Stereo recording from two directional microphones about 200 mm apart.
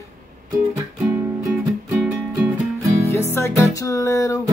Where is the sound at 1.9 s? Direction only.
10° right (ahead or behind).